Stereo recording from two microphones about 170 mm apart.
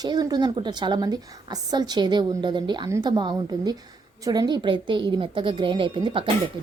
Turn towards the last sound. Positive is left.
turn(degrees=-30)  # may be behind; listen again after turning